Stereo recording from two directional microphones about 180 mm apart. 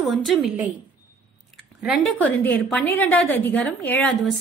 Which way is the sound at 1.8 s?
5° right (ahead or behind).